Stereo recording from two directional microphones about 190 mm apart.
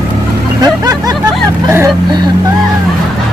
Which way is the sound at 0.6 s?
20° right (ahead or behind).